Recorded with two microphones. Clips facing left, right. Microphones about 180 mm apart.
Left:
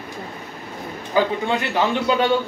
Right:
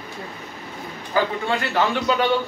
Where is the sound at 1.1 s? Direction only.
20° left (ahead or behind).